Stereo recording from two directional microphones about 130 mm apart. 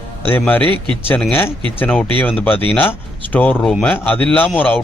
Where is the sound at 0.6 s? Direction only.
40° right (ahead or behind).